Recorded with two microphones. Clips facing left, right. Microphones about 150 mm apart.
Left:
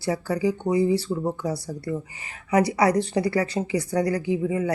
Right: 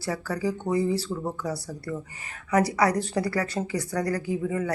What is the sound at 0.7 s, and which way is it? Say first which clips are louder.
Speech: left 4 dB; 5° left (ahead or behind).